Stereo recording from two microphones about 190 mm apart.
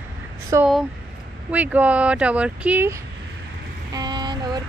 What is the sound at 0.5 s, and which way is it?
Speech, 15° right (ahead or behind).